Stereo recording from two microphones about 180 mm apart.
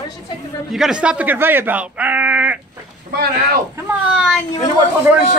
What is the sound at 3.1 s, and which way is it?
Speech, 60° right (ahead or behind).